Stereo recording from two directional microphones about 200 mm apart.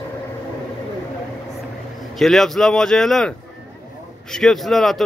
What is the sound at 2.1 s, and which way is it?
A man's voice, centre (ahead or behind).